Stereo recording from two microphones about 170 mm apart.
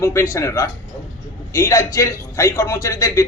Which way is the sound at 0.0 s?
15° left (ahead or behind).